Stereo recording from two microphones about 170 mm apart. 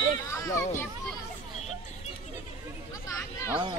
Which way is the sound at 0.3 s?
15° left (ahead or behind).